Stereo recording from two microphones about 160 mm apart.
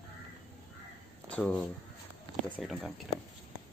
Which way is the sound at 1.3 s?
5° left (ahead or behind).